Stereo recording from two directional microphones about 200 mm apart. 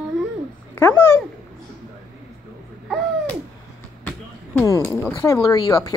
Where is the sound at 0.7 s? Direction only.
10° left (ahead or behind).